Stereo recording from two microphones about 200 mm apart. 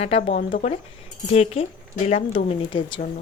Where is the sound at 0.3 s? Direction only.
40° left (ahead or behind).